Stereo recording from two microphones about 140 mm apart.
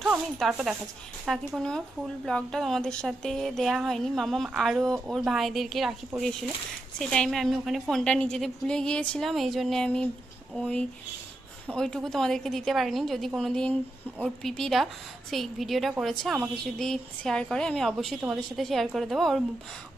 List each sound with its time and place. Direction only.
0.0 s speech: 5° right (ahead or behind)